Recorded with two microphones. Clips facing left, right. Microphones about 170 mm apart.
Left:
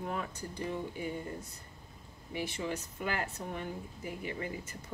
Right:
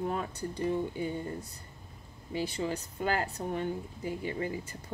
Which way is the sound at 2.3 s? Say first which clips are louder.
Right 4 dB; 30° right (ahead or behind).